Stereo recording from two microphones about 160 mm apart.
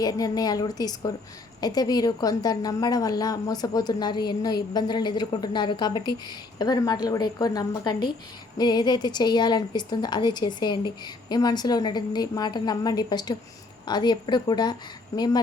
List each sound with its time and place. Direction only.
0.0 s a woman's voice: 25° left (ahead or behind)